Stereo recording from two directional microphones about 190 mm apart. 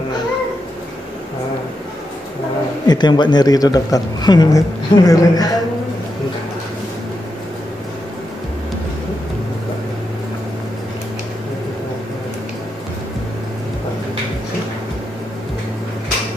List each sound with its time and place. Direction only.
2.9 s speech: 20° left (ahead or behind)